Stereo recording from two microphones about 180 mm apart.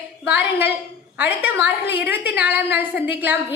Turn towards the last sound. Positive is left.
turn(degrees=-10)  # may be behind; listen again after turning